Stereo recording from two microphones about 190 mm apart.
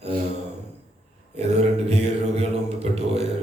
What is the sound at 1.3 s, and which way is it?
A man's voice, 35° right (ahead or behind).